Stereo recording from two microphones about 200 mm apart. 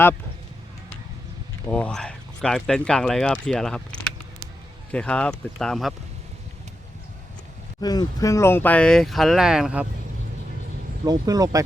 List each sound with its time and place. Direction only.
1.6 s speech: 5° left (ahead or behind)
7.8 s speech: 20° left (ahead or behind); by 9.8 s 5° right (ahead or behind)
11.0 s speech: 20° right (ahead or behind)